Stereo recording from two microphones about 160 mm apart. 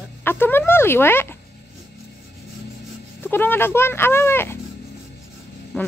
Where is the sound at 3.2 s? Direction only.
10° left (ahead or behind).